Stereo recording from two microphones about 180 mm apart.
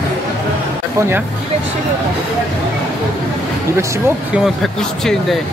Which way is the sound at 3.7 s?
15° right (ahead or behind).